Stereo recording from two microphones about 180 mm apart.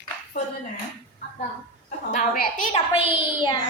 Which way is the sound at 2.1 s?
50° left (ahead or behind).